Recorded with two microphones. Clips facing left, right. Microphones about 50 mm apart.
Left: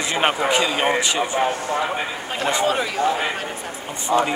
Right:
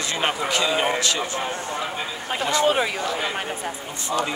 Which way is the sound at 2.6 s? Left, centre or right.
Centre.